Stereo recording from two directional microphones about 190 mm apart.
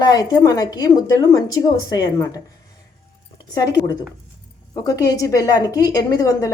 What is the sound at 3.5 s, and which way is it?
A woman's voice, 20° left (ahead or behind).